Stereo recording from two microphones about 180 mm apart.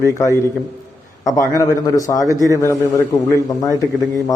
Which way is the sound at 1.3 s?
15° left (ahead or behind).